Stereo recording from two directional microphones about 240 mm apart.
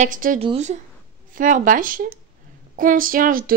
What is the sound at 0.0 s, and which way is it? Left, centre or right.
Speech, right.